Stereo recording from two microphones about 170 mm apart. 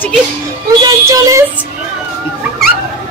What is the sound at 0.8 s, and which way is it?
Child singing, 20° right (ahead or behind).